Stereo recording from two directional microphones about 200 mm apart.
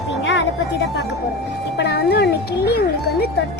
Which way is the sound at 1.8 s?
55° left (ahead or behind).